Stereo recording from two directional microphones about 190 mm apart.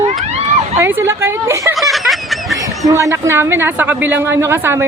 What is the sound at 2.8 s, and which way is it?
A woman's voice, 15° right (ahead or behind).